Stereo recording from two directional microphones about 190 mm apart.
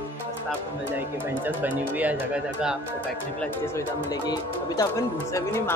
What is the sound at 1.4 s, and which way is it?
Speech, 10° right (ahead or behind).